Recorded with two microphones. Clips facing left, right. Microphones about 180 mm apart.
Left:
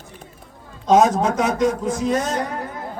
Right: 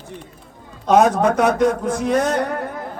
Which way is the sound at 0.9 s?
60° right (ahead or behind).